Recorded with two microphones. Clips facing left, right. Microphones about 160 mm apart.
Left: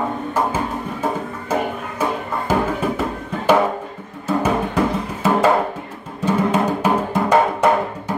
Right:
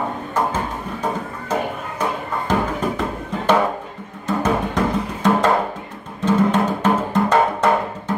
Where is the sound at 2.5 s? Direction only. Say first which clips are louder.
Left 2 dB; 5° left (ahead or behind).